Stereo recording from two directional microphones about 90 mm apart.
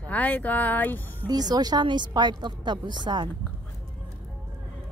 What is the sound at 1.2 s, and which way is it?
A woman's voice, 45° right (ahead or behind).